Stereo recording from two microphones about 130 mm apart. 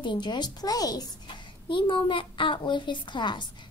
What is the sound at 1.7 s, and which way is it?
Speech, 40° left (ahead or behind).